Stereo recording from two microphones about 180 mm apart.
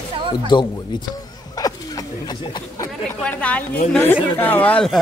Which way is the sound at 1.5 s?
20° left (ahead or behind).